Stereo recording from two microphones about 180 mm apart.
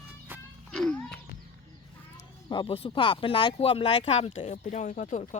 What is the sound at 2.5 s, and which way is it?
A child's voice, 25° left (ahead or behind).